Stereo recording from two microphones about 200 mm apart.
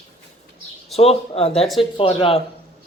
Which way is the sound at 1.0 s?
30° left (ahead or behind).